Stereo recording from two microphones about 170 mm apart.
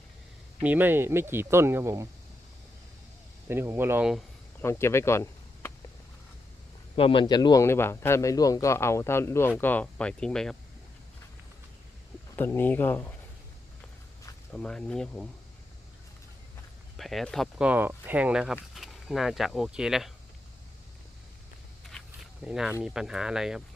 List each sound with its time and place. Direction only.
0.6 s speech: 10° right (ahead or behind)
3.5 s speech: 15° right (ahead or behind)
4.6 s speech: 15° left (ahead or behind)
6.9 s a man's voice: 30° left (ahead or behind); by 10.6 s 5° left (ahead or behind)
12.4 s a man's voice: 10° left (ahead or behind)
14.5 s speech: 5° left (ahead or behind)
17.0 s speech: centre (ahead or behind)
17.7 s speech: 10° right (ahead or behind)
21.8 s zipper: centre (ahead or behind)
22.8 s speech: 5° right (ahead or behind)